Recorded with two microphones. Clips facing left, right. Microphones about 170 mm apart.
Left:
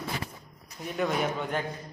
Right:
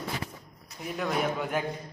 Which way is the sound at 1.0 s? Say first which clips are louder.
Left 1 dB; centre (ahead or behind).